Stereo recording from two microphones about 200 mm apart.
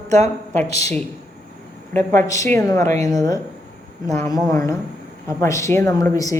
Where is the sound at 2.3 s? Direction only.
15° left (ahead or behind).